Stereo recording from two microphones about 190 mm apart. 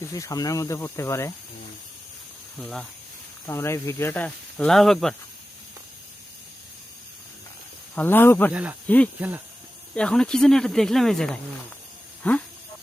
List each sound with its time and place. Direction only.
0.0 s speech: 15° left (ahead or behind)
2.6 s speech: 5° left (ahead or behind)
7.9 s speech: 10° left (ahead or behind)